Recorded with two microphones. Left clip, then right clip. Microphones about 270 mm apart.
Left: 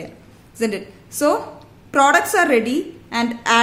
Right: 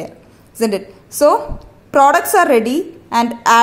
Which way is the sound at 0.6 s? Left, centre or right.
Centre.